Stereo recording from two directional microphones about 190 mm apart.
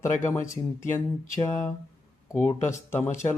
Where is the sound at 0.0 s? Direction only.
15° left (ahead or behind).